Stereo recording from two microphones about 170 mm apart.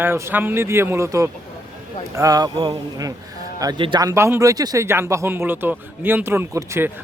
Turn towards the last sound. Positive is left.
turn(degrees=-15)  # may be behind; listen again after turning